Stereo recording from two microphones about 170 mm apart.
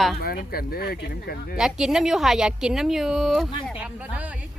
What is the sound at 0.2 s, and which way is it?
Speech, 60° left (ahead or behind).